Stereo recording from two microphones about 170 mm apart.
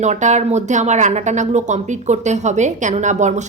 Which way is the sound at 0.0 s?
45° right (ahead or behind).